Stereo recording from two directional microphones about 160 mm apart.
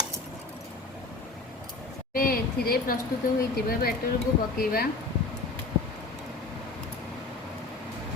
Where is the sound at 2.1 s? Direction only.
65° left (ahead or behind).